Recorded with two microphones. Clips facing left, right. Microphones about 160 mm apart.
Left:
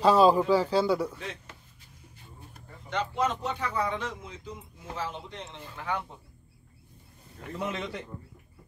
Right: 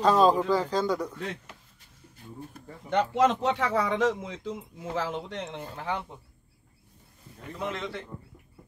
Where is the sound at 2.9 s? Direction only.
75° right (ahead or behind).